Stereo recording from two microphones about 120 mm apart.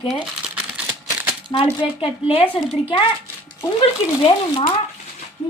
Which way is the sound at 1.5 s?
35° left (ahead or behind).